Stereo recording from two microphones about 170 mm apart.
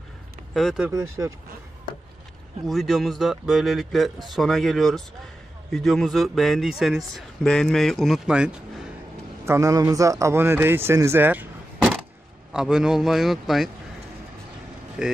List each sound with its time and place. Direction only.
0.6 s a man's voice: 5° right (ahead or behind)
0.9 s speech: 20° right (ahead or behind)
2.6 s a man's voice: centre (ahead or behind)
9.5 s a man's voice: 20° right (ahead or behind); by 13.7 s centre (ahead or behind)
15.0 s a man's voice: 5° right (ahead or behind)